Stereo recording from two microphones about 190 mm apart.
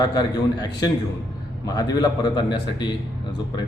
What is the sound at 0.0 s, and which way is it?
Speech, 20° left (ahead or behind).